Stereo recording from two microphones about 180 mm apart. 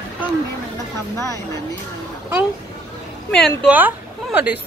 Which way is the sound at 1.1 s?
15° left (ahead or behind).